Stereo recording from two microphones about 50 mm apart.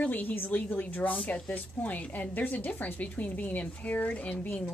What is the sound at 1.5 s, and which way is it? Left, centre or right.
A woman's voice, left.